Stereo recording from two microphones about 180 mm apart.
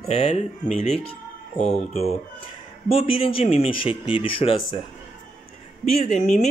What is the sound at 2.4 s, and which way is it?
A man's voice, 30° left (ahead or behind).